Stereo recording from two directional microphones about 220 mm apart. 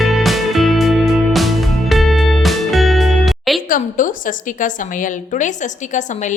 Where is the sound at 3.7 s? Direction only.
40° left (ahead or behind).